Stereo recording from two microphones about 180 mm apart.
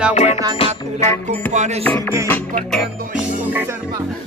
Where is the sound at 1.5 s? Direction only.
40° right (ahead or behind).